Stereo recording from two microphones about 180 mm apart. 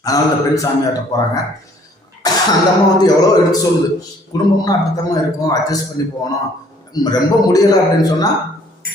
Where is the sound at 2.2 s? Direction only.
20° left (ahead or behind).